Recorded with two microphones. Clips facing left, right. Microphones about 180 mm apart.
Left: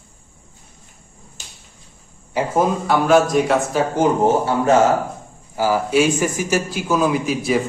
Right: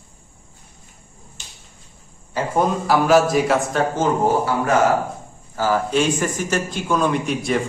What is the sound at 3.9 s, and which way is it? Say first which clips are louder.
Speech: left 4 dB; 15° left (ahead or behind).